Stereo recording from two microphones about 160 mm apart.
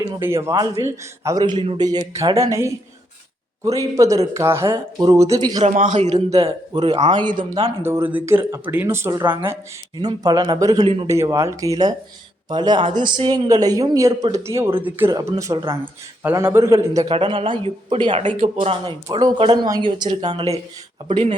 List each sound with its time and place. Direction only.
0.2 s speech: 15° right (ahead or behind)
5.6 s a man's voice: 50° right (ahead or behind)
6.4 s speech: 30° right (ahead or behind)
17.1 s speech: 30° right (ahead or behind)
21.1 s speech: 40° right (ahead or behind)